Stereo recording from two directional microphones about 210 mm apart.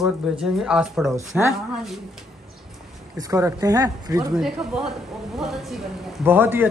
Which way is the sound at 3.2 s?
15° right (ahead or behind).